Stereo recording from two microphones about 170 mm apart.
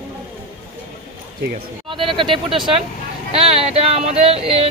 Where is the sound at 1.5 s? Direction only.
30° right (ahead or behind).